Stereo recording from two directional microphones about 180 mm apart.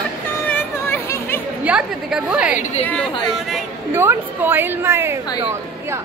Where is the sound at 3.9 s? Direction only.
10° right (ahead or behind).